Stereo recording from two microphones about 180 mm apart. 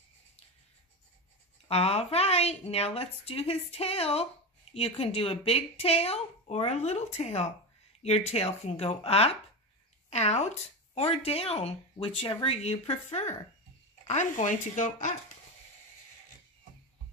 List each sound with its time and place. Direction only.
1.7 s a woman's voice: 35° left (ahead or behind)